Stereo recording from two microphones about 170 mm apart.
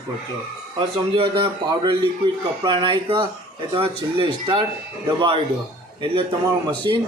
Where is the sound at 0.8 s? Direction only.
30° right (ahead or behind).